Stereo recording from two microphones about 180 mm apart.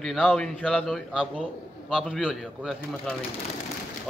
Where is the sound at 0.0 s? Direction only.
Centre (ahead or behind).